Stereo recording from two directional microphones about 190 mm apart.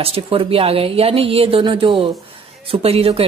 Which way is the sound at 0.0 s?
30° right (ahead or behind).